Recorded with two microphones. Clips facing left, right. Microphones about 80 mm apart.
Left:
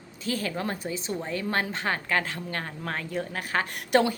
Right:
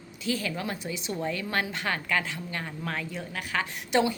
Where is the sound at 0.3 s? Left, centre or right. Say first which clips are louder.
Left 1 dB; left.